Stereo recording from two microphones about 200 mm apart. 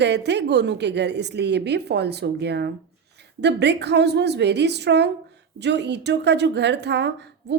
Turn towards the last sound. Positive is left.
turn(degrees=-60)  # may be behind; listen again after turning